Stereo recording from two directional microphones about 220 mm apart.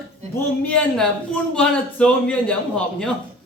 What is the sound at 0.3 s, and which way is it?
A man's voice, 5° left (ahead or behind).